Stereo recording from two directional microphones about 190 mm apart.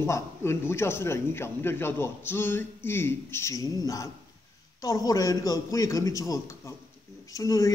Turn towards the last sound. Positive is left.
turn(degrees=15)  # may be behind; listen again after turning